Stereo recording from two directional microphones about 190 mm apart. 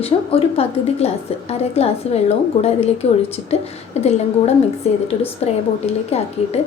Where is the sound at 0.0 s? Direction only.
30° left (ahead or behind).